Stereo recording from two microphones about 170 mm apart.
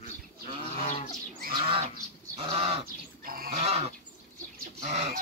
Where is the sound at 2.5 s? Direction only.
35° right (ahead or behind).